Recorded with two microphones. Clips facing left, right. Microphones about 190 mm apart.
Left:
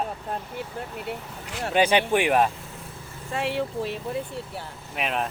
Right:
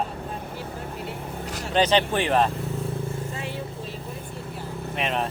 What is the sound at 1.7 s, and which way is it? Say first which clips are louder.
Speech: even; 10° left (ahead or behind).